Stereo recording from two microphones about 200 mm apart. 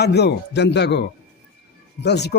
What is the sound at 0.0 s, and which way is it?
A man's voice, 55° left (ahead or behind).